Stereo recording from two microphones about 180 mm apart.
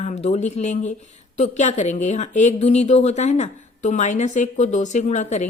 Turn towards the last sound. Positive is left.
turn(degrees=40)  # may be behind; listen again after turning